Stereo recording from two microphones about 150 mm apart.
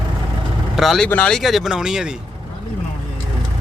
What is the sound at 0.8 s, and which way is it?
Speech, centre (ahead or behind).